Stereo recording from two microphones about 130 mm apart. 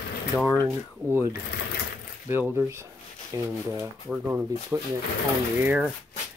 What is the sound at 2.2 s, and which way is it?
Speech, 20° right (ahead or behind).